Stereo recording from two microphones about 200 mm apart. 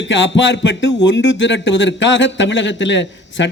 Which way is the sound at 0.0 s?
65° left (ahead or behind).